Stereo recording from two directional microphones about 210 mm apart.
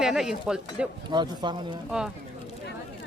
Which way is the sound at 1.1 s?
20° right (ahead or behind).